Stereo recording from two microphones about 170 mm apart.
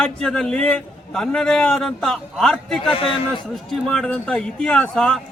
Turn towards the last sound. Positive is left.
turn(degrees=5)  # may be behind; listen again after turning